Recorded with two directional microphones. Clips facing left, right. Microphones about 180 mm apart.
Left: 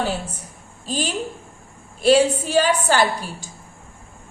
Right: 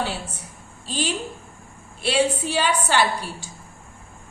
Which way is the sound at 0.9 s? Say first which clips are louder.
Left 2 dB; 45° left (ahead or behind).